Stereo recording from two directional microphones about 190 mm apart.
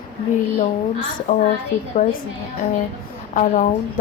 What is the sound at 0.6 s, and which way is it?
Speech, 45° left (ahead or behind).